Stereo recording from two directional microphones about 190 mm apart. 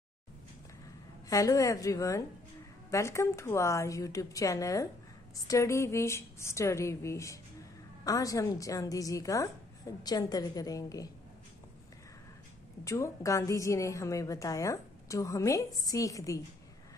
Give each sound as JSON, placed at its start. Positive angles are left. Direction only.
{"t": 1.3, "sound": "a woman's voice", "side_deg": 15}
{"t": 12.8, "sound": "a woman's voice", "side_deg": 15}